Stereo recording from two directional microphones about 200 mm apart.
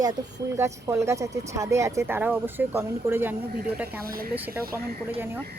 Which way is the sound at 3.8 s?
45° right (ahead or behind).